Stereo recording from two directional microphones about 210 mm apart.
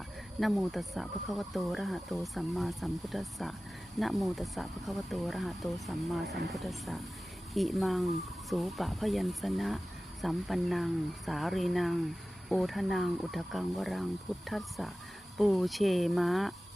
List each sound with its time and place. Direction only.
0.3 s speech: centre (ahead or behind)